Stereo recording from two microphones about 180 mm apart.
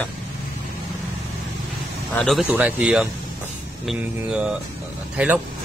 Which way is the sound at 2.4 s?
10° right (ahead or behind).